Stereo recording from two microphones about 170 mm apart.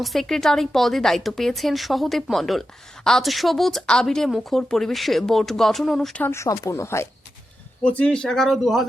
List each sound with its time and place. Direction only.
0.0 s speech: centre (ahead or behind)
6.2 s speech: 15° left (ahead or behind); by 8.9 s centre (ahead or behind)